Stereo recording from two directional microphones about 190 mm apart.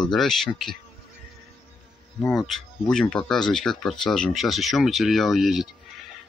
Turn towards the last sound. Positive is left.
turn(degrees=0)  # may be behind; listen again after turning